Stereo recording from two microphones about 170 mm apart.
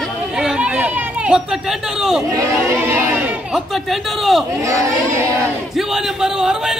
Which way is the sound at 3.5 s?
Centre (ahead or behind).